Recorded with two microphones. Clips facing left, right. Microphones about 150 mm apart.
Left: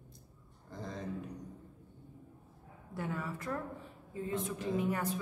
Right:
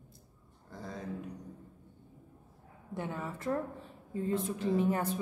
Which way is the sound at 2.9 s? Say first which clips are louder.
Right 1 dB; 20° right (ahead or behind).